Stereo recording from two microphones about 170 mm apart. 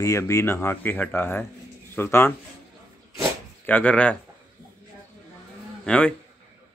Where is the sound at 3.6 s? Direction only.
10° left (ahead or behind).